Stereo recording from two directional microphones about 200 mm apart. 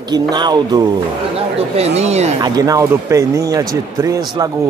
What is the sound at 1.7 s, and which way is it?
Speech, 30° right (ahead or behind).